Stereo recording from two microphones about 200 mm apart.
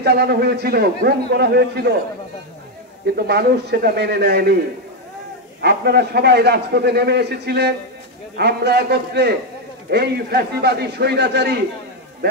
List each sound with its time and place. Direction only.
0.0 s a man's voice: 50° right (ahead or behind)
3.2 s a man's voice: 50° right (ahead or behind)
5.6 s a man's voice: 55° right (ahead or behind)